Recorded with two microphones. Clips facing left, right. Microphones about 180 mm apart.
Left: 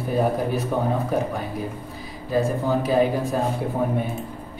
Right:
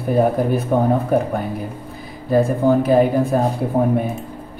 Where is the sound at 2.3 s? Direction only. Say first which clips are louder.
Right 7 dB; 55° right (ahead or behind).